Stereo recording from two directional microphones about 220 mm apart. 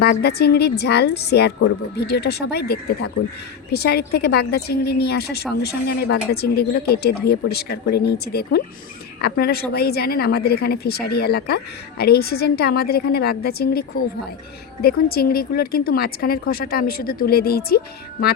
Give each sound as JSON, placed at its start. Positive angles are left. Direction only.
{"t": 0.0, "sound": "a woman's voice", "side_deg": 45}